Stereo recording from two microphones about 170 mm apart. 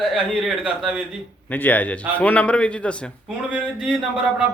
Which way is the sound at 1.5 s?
10° left (ahead or behind).